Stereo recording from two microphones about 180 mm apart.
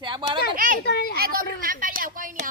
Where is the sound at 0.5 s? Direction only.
50° right (ahead or behind).